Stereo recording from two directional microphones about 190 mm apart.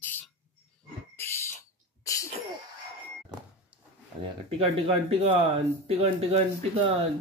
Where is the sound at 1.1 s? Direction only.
10° left (ahead or behind).